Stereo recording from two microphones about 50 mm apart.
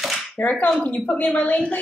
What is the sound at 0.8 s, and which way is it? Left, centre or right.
Speech, left.